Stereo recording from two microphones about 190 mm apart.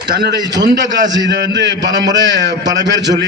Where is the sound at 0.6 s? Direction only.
70° right (ahead or behind).